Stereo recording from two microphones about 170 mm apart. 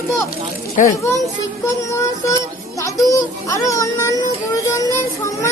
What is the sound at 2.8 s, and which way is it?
A child's voice, 20° left (ahead or behind).